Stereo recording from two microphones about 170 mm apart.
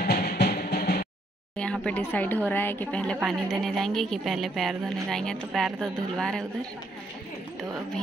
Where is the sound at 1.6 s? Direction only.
5° left (ahead or behind).